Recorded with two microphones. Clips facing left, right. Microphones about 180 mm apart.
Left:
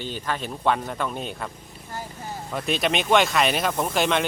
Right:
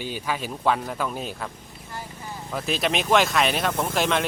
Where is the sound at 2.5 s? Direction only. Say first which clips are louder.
Left 1 dB; centre (ahead or behind).